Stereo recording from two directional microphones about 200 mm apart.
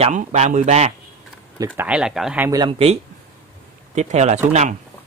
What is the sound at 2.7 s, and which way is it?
A man's voice, 30° right (ahead or behind).